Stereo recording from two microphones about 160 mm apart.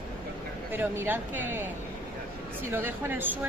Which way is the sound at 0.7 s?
10° right (ahead or behind).